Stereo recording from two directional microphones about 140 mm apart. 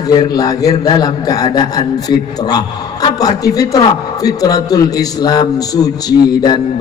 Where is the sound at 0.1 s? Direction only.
30° left (ahead or behind).